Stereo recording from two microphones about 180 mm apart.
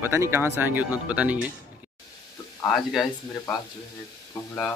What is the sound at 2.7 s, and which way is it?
Speech, centre (ahead or behind).